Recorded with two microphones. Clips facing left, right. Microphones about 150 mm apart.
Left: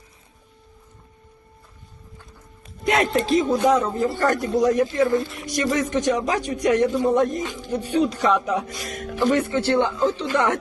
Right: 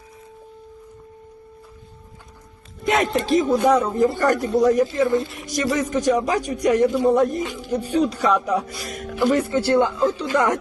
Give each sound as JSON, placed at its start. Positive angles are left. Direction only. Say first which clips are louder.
{"t": 2.8, "sound": "speech", "louder": "even", "side_deg": 0}
{"t": 3.6, "sound": "speech", "louder": "right 2 dB", "side_deg": -10}
{"t": 6.0, "sound": "speech", "louder": "right 2 dB", "side_deg": -40}
{"t": 6.6, "sound": "speech", "louder": "right 2 dB", "side_deg": -10}
{"t": 7.9, "sound": "speech", "louder": "even", "side_deg": 10}
{"t": 8.2, "sound": "speech", "louder": "right 1 dB", "side_deg": -10}